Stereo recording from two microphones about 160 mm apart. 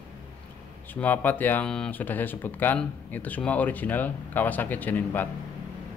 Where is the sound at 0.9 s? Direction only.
10° left (ahead or behind).